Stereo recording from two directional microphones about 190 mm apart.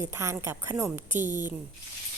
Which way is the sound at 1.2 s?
40° right (ahead or behind).